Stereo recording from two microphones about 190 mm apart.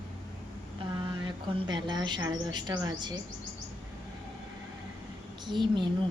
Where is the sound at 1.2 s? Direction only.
25° right (ahead or behind).